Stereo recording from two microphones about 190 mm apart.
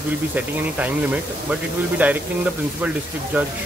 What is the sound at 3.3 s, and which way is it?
Speech, 5° right (ahead or behind).